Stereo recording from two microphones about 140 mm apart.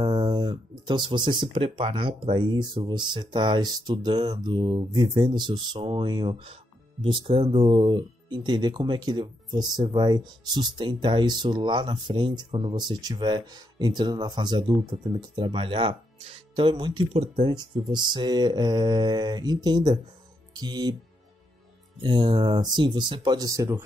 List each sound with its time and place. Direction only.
0.0 s speech: 30° right (ahead or behind)
17.1 s speech: 45° right (ahead or behind)
22.0 s speech: 35° right (ahead or behind)